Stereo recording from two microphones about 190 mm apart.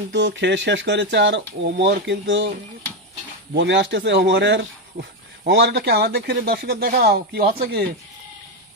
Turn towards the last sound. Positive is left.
turn(degrees=-55)  # may be behind; listen again after turning